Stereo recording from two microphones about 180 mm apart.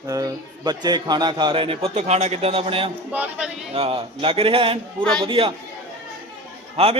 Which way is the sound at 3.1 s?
5° right (ahead or behind).